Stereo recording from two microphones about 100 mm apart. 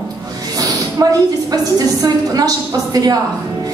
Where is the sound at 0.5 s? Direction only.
35° right (ahead or behind).